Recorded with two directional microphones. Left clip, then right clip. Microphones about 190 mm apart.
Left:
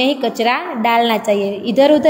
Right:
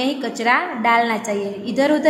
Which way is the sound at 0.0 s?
20° left (ahead or behind).